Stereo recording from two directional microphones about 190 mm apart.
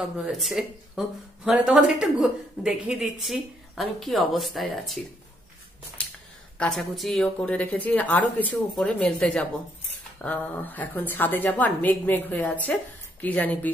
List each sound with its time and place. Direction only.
0.2 s a woman's voice: centre (ahead or behind)
6.0 s a sound: 5° left (ahead or behind)
6.6 s a woman's voice: centre (ahead or behind)